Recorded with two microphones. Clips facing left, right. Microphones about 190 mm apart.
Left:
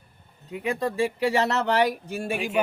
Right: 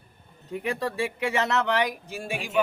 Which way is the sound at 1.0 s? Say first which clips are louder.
Left 5 dB; 35° left (ahead or behind).